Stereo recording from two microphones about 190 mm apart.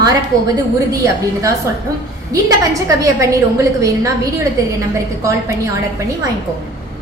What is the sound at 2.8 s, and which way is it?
A woman's voice, 15° right (ahead or behind).